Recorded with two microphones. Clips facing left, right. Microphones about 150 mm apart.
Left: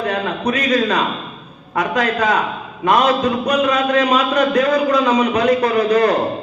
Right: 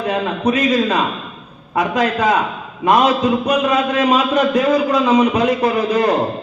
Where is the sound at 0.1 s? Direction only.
25° right (ahead or behind).